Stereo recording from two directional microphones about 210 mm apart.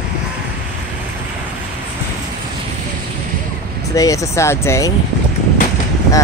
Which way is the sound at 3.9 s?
15° left (ahead or behind).